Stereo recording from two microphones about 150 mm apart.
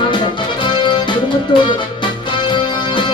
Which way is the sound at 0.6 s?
30° left (ahead or behind).